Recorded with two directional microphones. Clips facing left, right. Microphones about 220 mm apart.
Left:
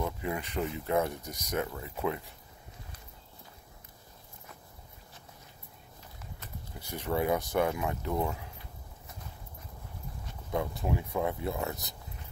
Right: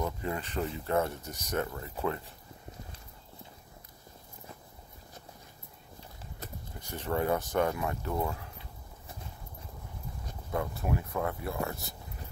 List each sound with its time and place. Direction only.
0.0 s speech: 15° left (ahead or behind)
6.9 s speech: 10° left (ahead or behind)
10.5 s speech: 15° left (ahead or behind)